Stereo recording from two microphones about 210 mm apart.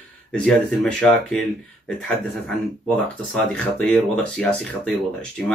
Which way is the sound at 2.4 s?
5° left (ahead or behind).